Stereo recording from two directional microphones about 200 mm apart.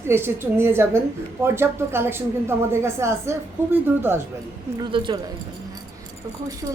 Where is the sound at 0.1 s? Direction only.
10° right (ahead or behind).